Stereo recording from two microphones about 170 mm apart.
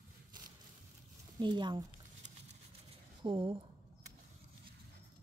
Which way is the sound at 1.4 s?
25° right (ahead or behind).